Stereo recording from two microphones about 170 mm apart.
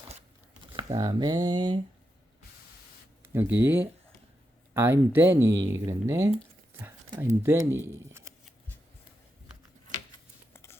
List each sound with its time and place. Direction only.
0.7 s speech: 25° right (ahead or behind)
3.3 s speech: 10° right (ahead or behind)
10.5 s a sound: 15° left (ahead or behind)